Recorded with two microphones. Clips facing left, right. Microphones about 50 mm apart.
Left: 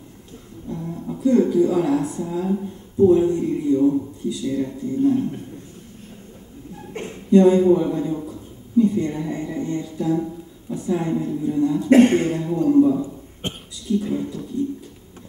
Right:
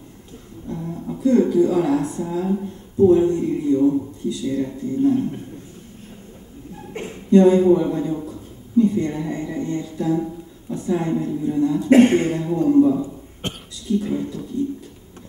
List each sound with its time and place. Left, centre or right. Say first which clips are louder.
0.7 s music: right 1 dB; centre
1.3 s speech: right 1 dB; centre
6.9 s a sound: even; centre
7.3 s a man's voice: right 1 dB; centre
13.0 s cough: even; centre
13.8 s speech: even; centre